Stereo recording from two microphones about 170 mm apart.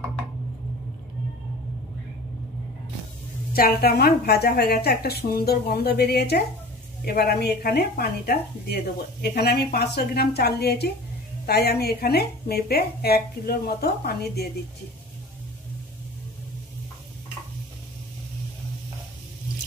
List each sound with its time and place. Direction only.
3.5 s a woman's voice: 60° left (ahead or behind)